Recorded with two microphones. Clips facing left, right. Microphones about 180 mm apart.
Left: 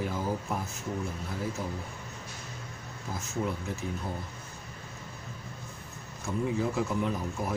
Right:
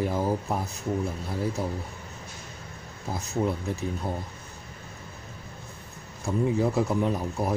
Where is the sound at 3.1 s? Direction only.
35° right (ahead or behind).